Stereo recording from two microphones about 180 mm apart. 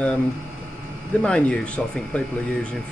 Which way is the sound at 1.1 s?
5° left (ahead or behind).